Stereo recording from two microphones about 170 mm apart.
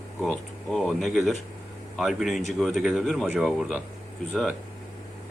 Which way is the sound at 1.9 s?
Centre (ahead or behind).